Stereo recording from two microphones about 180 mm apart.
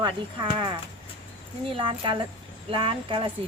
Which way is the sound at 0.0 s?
25° right (ahead or behind).